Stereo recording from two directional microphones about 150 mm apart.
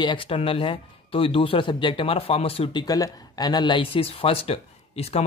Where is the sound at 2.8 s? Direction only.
25° left (ahead or behind).